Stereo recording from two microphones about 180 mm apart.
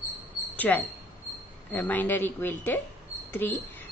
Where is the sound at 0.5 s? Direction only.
10° left (ahead or behind).